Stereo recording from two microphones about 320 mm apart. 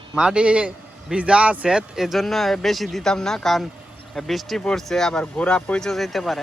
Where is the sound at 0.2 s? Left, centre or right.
Centre.